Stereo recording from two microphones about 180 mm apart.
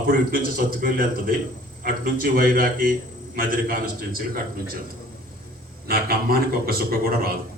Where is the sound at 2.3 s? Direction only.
55° right (ahead or behind).